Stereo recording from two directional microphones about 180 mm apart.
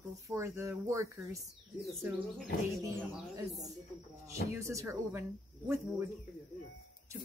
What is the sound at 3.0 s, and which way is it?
Speech, 20° right (ahead or behind).